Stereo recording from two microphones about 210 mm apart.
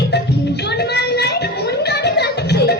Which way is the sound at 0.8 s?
50° left (ahead or behind).